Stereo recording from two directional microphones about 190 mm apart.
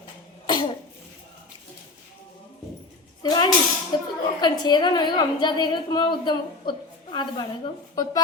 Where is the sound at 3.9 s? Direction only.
20° left (ahead or behind).